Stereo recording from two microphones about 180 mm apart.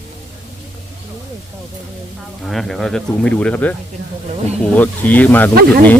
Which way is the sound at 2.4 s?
Centre (ahead or behind).